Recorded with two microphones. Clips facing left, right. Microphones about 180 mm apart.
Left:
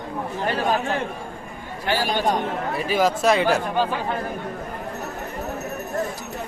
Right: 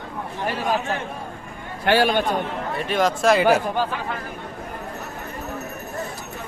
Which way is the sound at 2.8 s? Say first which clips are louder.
Even; 5° left (ahead or behind).